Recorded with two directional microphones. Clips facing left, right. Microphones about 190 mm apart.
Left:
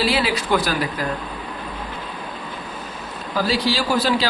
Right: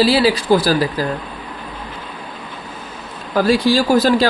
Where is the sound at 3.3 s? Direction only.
50° right (ahead or behind).